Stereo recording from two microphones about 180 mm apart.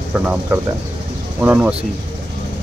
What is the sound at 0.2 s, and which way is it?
Speech, 10° right (ahead or behind).